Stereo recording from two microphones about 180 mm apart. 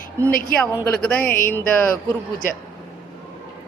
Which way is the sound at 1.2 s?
50° left (ahead or behind).